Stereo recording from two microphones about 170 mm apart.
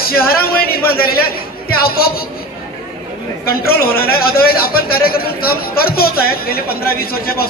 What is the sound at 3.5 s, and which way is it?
A man's voice, 65° left (ahead or behind).